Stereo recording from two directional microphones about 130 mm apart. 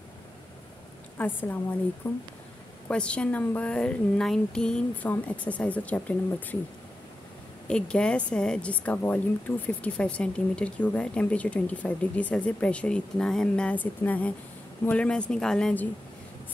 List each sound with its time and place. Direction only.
1.1 s speech: 15° left (ahead or behind)
2.9 s speech: 10° left (ahead or behind)
7.7 s speech: 5° left (ahead or behind)